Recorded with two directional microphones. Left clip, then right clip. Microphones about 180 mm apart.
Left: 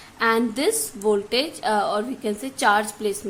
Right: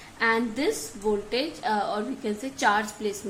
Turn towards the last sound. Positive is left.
turn(degrees=25)  # may be behind; listen again after turning